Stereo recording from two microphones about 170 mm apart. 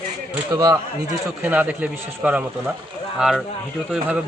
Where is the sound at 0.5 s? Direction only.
20° right (ahead or behind).